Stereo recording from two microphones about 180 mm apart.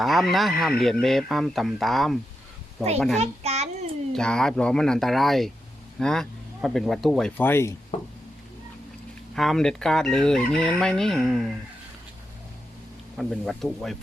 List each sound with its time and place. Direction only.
0.0 s speech: centre (ahead or behind)
3.2 s child singing: 35° right (ahead or behind)
4.1 s speech: 5° left (ahead or behind)
7.9 s a sound: 40° left (ahead or behind)
9.3 s speech: centre (ahead or behind)
13.1 s speech: centre (ahead or behind)